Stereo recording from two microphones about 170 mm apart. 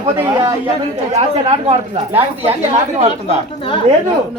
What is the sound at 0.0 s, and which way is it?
Speech, 20° right (ahead or behind).